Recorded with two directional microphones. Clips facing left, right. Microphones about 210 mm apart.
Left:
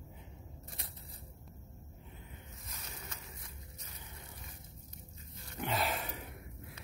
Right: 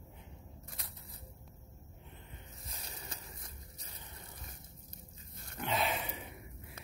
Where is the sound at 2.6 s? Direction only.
30° right (ahead or behind).